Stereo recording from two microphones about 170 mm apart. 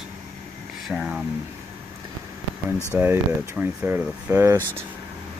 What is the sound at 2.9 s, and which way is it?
Speech, 10° right (ahead or behind).